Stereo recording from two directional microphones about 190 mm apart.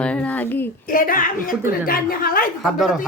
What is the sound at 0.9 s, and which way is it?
Speech, 50° left (ahead or behind).